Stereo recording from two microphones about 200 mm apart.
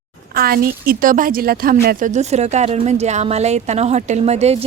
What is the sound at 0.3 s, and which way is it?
Speech, 50° right (ahead or behind).